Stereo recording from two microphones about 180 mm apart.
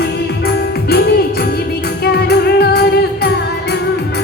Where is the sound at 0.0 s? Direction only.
60° left (ahead or behind).